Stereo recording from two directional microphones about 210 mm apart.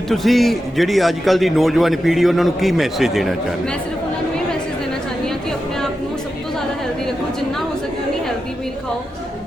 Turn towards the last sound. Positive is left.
turn(degrees=0)  # may be behind; listen again after turning